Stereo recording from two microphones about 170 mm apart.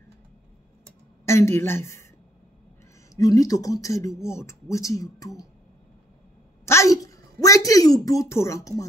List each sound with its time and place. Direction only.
1.2 s a woman's voice: 15° left (ahead or behind)
3.2 s speech: 20° left (ahead or behind)
6.6 s a sound: 15° left (ahead or behind)